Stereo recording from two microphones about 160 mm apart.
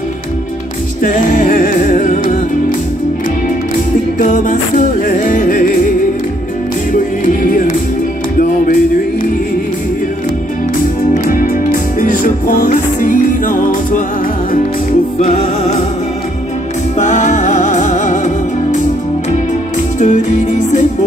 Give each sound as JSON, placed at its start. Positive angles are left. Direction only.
{"t": 1.0, "sound": "music", "side_deg": 55}
{"t": 4.2, "sound": "music", "side_deg": 55}
{"t": 8.4, "sound": "music", "side_deg": 60}
{"t": 12.0, "sound": "music", "side_deg": 55}
{"t": 15.1, "sound": "music", "side_deg": 40}
{"t": 17.0, "sound": "music", "side_deg": 50}
{"t": 20.0, "sound": "music", "side_deg": 50}